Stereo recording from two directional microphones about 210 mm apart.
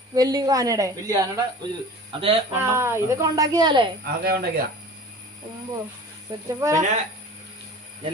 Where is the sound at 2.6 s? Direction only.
10° right (ahead or behind).